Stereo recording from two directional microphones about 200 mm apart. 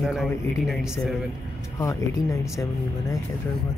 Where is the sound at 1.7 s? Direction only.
15° left (ahead or behind).